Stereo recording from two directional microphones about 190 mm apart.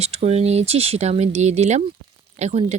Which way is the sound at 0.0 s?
35° right (ahead or behind).